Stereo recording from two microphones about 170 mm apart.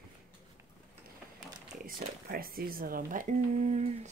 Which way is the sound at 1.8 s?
60° right (ahead or behind).